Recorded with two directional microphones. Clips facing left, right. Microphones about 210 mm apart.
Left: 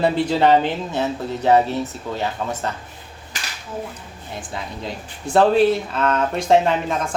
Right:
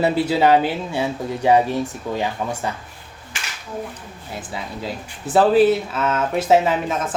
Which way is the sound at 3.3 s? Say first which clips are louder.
Left 1 dB; 40° left (ahead or behind).